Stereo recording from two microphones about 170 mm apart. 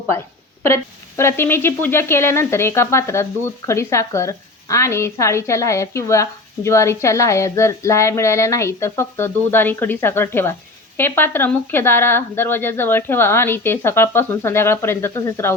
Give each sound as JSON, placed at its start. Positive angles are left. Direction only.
{"t": 0.6, "sound": "speech", "side_deg": 15}